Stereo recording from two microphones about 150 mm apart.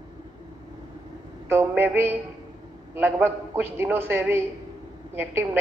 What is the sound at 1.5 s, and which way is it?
A man's voice, 15° right (ahead or behind).